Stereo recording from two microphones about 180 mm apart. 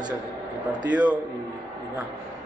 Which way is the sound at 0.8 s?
10° right (ahead or behind).